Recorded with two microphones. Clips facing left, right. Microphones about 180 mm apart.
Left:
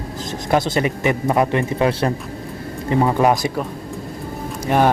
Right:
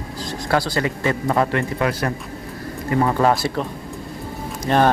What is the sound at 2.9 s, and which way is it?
Speech, 15° left (ahead or behind).